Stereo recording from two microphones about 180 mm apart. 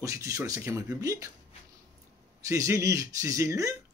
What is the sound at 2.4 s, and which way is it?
Speech, 15° right (ahead or behind).